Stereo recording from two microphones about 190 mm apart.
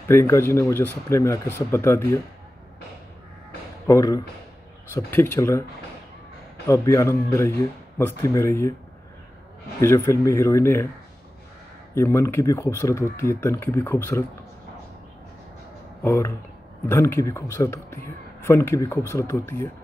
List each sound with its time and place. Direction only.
0.1 s speech: 15° left (ahead or behind)
3.8 s speech: 20° left (ahead or behind)
6.7 s speech: 15° left (ahead or behind)
9.8 s speech: 15° left (ahead or behind)
11.9 s speech: 15° left (ahead or behind)
16.0 s speech: 15° left (ahead or behind)